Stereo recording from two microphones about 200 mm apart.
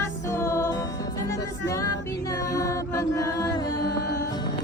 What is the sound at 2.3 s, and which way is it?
Mantra, 15° left (ahead or behind).